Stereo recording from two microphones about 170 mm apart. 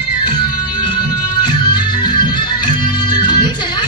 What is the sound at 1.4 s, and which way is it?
Music, 25° left (ahead or behind).